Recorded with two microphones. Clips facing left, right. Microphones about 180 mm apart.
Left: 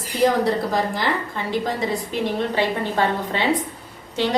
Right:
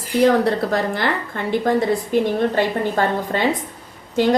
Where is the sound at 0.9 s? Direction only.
60° right (ahead or behind).